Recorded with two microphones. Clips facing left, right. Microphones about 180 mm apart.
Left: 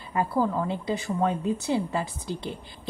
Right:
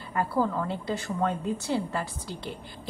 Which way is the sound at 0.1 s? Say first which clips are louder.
Left 2 dB; 15° left (ahead or behind).